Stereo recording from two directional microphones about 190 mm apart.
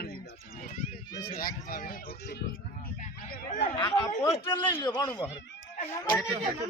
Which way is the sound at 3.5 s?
30° left (ahead or behind).